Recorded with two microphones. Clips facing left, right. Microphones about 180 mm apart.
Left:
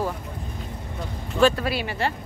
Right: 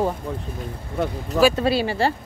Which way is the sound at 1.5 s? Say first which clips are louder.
Right 6 dB; 30° right (ahead or behind).